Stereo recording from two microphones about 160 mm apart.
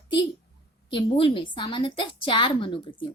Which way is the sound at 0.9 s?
30° left (ahead or behind).